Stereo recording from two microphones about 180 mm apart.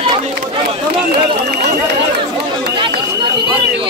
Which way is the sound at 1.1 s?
55° right (ahead or behind).